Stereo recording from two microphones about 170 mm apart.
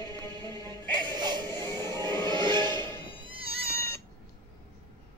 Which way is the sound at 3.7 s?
15° left (ahead or behind).